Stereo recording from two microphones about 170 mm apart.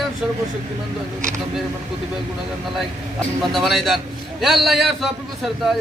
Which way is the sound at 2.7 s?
Centre (ahead or behind).